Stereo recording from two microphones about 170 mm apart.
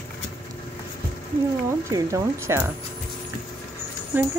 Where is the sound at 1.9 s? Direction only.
15° right (ahead or behind).